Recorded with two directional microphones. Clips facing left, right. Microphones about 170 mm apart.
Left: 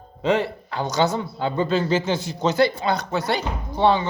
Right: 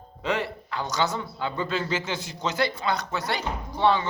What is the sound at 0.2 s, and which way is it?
A man's voice, 25° left (ahead or behind).